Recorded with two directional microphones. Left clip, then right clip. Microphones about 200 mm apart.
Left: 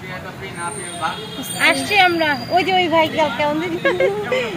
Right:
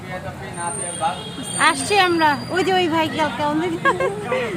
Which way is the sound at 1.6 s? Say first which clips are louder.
Left 2 dB; 15° right (ahead or behind).